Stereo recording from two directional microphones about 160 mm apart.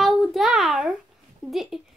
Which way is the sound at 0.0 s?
Centre (ahead or behind).